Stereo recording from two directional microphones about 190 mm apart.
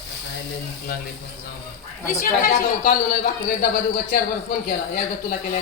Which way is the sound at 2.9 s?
50° left (ahead or behind).